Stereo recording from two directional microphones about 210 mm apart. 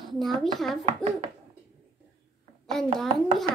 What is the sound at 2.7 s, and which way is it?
Speech, centre (ahead or behind).